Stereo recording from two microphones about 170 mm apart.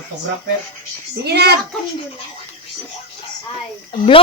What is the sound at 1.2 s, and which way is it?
Speech, 75° right (ahead or behind).